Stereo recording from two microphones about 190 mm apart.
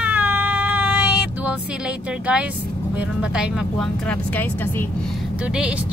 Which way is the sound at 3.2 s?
5° right (ahead or behind).